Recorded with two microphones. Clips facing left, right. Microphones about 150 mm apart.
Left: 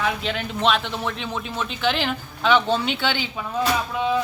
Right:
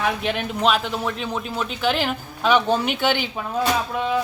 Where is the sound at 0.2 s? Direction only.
15° right (ahead or behind).